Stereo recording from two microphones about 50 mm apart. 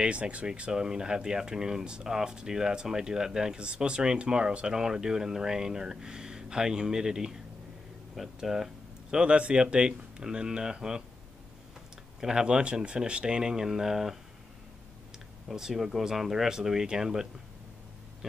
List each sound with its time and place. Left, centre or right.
0.0 s speech: right; by 8.6 s centre
9.1 s speech: right
12.2 s speech: centre
15.4 s speech: centre